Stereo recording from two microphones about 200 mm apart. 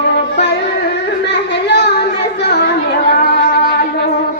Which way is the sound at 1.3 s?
60° left (ahead or behind).